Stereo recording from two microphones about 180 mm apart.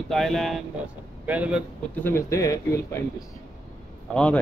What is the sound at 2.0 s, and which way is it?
A man's voice, 15° left (ahead or behind).